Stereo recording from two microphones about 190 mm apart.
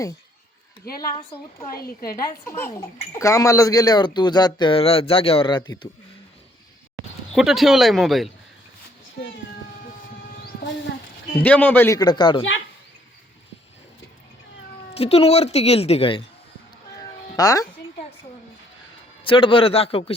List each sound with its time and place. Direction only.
0.9 s a man's voice: 20° left (ahead or behind)
7.3 s speech: centre (ahead or behind)
9.2 s speech: 60° left (ahead or behind)
11.4 s a man's voice: 10° left (ahead or behind); by 12.5 s 25° left (ahead or behind)
14.9 s speech: 30° left (ahead or behind)
17.3 s speech: 20° left (ahead or behind)
19.2 s speech: 25° left (ahead or behind)